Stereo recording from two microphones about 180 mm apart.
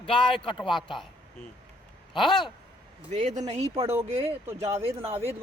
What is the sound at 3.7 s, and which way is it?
Speech, 15° right (ahead or behind).